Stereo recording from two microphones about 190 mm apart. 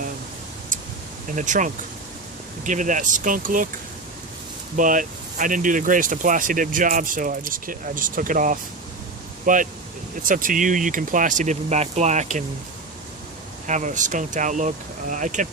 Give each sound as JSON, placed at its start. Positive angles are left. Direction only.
{"t": 1.4, "sound": "speech", "side_deg": -45}
{"t": 4.8, "sound": "speech", "side_deg": -45}
{"t": 13.7, "sound": "speech", "side_deg": -40}